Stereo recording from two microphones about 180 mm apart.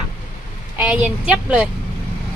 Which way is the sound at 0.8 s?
5° right (ahead or behind).